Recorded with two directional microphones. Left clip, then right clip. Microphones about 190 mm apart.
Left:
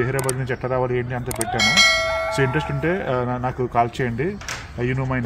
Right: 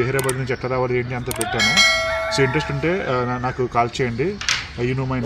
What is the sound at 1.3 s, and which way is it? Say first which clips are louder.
Church bell: even; centre (ahead or behind).